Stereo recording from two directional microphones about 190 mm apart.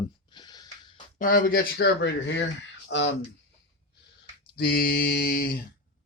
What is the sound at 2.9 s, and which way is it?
Speech, 65° left (ahead or behind).